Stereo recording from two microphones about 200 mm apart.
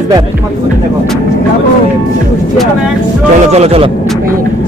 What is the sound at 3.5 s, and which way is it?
Speech, 30° right (ahead or behind).